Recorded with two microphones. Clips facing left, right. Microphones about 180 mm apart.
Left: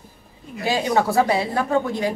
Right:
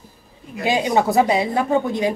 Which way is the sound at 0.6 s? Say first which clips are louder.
Right 2 dB; 20° right (ahead or behind).